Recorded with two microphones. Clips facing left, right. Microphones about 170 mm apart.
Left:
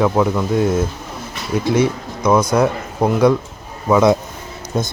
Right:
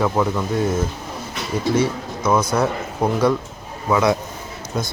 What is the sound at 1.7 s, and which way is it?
Speech, 10° left (ahead or behind).